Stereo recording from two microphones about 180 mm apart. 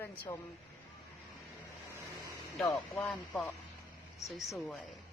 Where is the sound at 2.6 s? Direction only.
Centre (ahead or behind).